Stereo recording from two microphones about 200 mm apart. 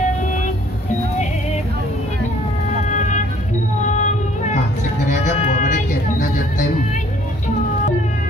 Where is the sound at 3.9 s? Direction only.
35° left (ahead or behind).